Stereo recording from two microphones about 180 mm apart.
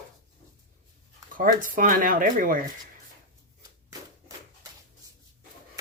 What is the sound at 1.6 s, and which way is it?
Speech, 50° right (ahead or behind).